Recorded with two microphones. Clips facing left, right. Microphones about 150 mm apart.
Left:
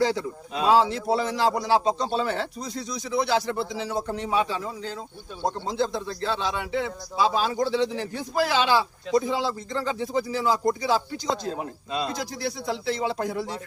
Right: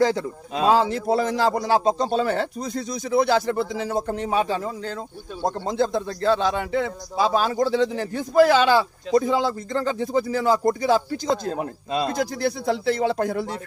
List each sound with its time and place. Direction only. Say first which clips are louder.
0.0 s a man's voice: right 3 dB; 50° right (ahead or behind)